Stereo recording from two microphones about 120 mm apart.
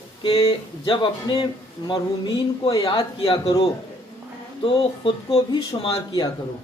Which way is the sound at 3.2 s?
55° left (ahead or behind).